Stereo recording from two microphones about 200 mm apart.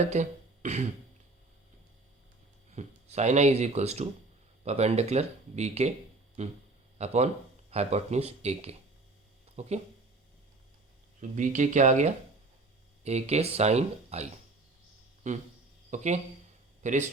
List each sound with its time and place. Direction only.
0.0 s speech: 35° right (ahead or behind)
2.7 s speech: 35° right (ahead or behind)
7.0 s speech: 35° right (ahead or behind)
11.2 s speech: 40° right (ahead or behind)
15.3 s speech: 35° right (ahead or behind)